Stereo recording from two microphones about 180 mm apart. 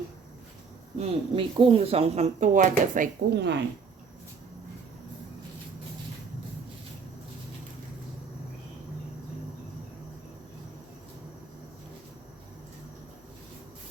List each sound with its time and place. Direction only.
0.9 s speech: 30° right (ahead or behind); by 3.1 s 45° right (ahead or behind)
3.3 s speech: 70° right (ahead or behind)